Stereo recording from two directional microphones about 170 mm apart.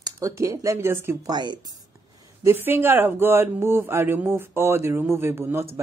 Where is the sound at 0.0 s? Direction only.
20° right (ahead or behind).